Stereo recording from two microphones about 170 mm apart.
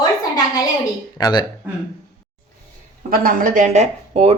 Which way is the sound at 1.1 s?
25° left (ahead or behind).